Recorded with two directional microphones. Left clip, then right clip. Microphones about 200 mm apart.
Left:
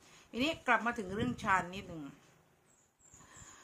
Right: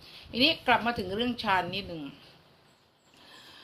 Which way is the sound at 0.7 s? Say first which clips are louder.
Right 6 dB; 15° left (ahead or behind).